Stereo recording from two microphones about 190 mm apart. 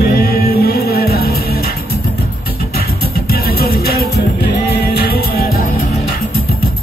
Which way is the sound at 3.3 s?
55° left (ahead or behind).